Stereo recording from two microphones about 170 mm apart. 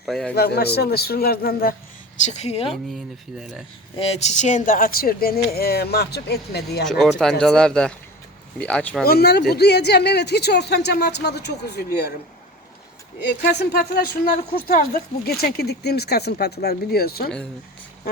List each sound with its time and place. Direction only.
0.0 s speech: centre (ahead or behind)
0.3 s speech: 70° left (ahead or behind)
2.2 s a woman's voice: 40° left (ahead or behind)
3.9 s speech: 35° left (ahead or behind); by 6.8 s 70° left (ahead or behind)
6.8 s speech: 5° left (ahead or behind)
9.0 s speech: 70° left (ahead or behind)
13.1 s speech: 75° left (ahead or behind)